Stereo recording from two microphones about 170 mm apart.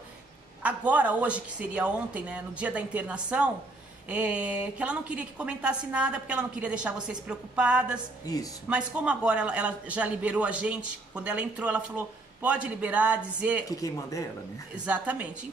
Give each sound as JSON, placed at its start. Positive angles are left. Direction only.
{"t": 0.6, "sound": "a man's voice", "side_deg": -10}
{"t": 13.7, "sound": "speech", "side_deg": 20}
{"t": 14.9, "sound": "a man's voice", "side_deg": -10}